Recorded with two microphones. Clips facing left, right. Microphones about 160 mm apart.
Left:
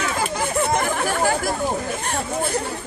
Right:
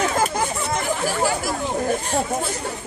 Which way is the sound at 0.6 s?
55° left (ahead or behind).